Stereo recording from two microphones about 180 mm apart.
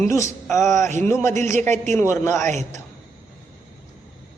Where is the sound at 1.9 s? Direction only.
15° left (ahead or behind).